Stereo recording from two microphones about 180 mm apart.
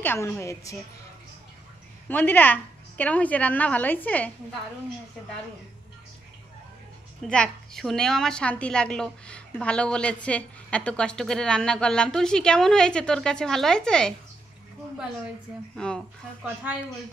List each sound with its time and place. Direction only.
0.0 s a woman's voice: 10° left (ahead or behind)
2.0 s a woman's voice: 10° left (ahead or behind)
7.2 s a woman's voice: 5° left (ahead or behind)
15.7 s a woman's voice: 5° left (ahead or behind)